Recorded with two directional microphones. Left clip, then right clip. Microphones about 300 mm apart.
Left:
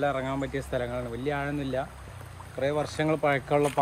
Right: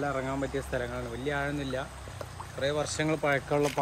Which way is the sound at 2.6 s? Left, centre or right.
Left.